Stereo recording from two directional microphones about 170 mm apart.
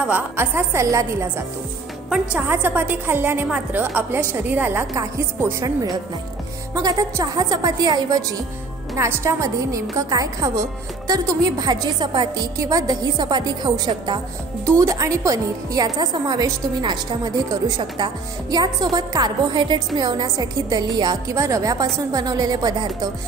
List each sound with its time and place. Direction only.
0.0 s a woman's voice: 10° right (ahead or behind)
2.0 s a woman's voice: 10° right (ahead or behind)
6.7 s a woman's voice: 20° right (ahead or behind)